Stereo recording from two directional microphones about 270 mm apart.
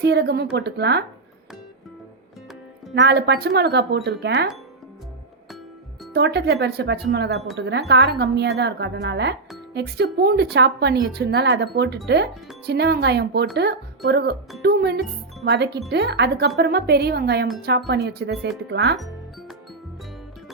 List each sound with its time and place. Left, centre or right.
0.0 s speech: right
2.9 s speech: right
6.1 s speech: right